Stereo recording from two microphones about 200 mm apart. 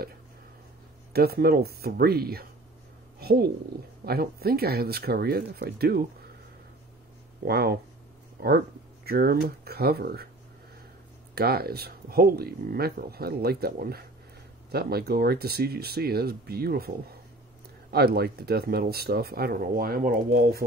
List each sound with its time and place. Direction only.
1.1 s speech: 50° right (ahead or behind)
3.2 s a sound: 50° right (ahead or behind)
4.0 s speech: 50° right (ahead or behind)
7.4 s speech: 50° right (ahead or behind)
11.3 s speech: 50° right (ahead or behind)
17.9 s speech: 50° right (ahead or behind)